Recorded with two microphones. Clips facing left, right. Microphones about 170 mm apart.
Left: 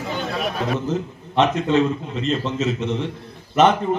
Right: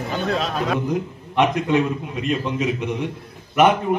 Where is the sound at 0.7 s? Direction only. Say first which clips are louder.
Right 1 dB; 15° right (ahead or behind).